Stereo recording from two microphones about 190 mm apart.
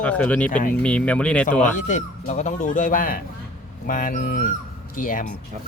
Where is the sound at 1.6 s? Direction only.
40° left (ahead or behind).